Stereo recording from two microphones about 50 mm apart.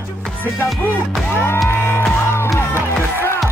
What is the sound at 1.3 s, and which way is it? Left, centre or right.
Music, left.